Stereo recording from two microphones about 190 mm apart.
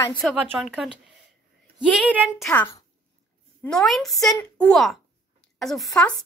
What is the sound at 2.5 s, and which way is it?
Speech, 15° left (ahead or behind).